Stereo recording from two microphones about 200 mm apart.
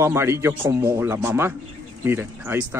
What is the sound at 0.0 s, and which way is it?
Speech, 15° right (ahead or behind).